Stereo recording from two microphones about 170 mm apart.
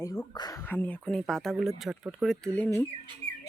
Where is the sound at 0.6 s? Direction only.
10° left (ahead or behind).